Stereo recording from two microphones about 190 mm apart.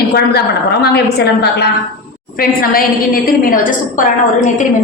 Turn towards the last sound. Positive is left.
turn(degrees=45)  # may be behind; listen again after turning